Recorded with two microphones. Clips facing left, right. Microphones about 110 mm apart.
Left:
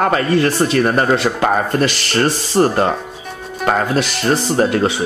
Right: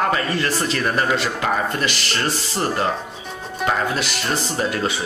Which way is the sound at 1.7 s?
40° left (ahead or behind).